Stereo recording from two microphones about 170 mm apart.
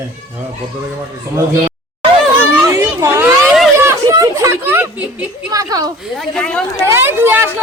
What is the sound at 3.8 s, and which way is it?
Chatter, 15° right (ahead or behind).